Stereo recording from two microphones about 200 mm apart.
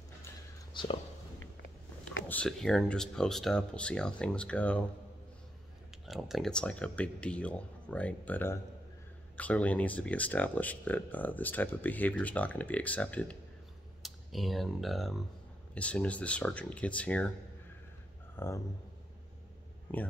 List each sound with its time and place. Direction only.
0.7 s speech: 25° left (ahead or behind)
2.2 s speech: 5° left (ahead or behind)
6.0 s speech: centre (ahead or behind)
18.3 s speech: 10° left (ahead or behind)
19.9 s speech: 10° left (ahead or behind)